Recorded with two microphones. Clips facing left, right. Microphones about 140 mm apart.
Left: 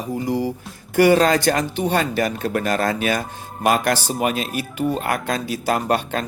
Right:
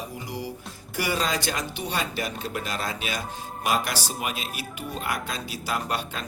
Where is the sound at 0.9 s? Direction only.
60° left (ahead or behind).